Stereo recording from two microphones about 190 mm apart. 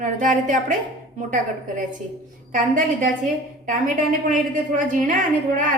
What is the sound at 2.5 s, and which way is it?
A woman's voice, 45° right (ahead or behind).